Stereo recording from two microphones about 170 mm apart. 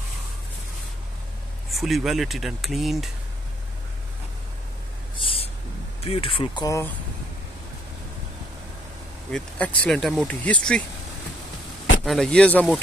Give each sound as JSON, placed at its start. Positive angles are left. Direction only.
{"t": 1.7, "sound": "speech", "side_deg": 0}
{"t": 5.1, "sound": "a sound", "side_deg": 30}
{"t": 6.0, "sound": "speech", "side_deg": 35}
{"t": 9.3, "sound": "speech", "side_deg": 5}
{"t": 12.0, "sound": "speech", "side_deg": 0}